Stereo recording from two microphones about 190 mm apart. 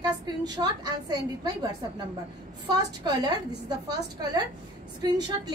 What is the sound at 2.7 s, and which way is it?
Speech, 20° right (ahead or behind).